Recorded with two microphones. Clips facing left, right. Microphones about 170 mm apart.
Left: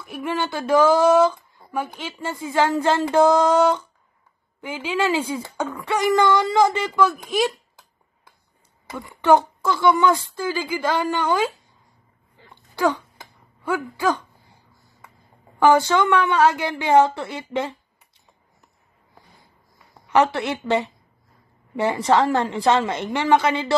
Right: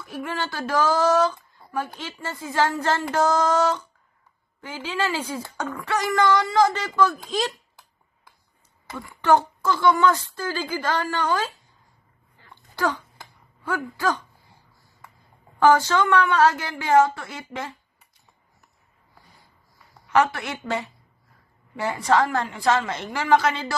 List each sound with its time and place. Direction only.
0.0 s speech: 20° left (ahead or behind)
9.0 s speech: 20° left (ahead or behind)
12.4 s a sound: 15° left (ahead or behind)
13.7 s speech: 15° left (ahead or behind)
15.6 s speech: 15° left (ahead or behind)
21.7 s a woman's voice: 25° left (ahead or behind)